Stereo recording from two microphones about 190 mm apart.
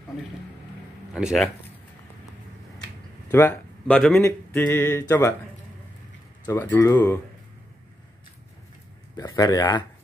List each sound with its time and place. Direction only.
1.1 s speech: centre (ahead or behind)
3.3 s speech: 10° left (ahead or behind)
6.4 s speech: 20° left (ahead or behind)
9.1 s speech: 20° left (ahead or behind)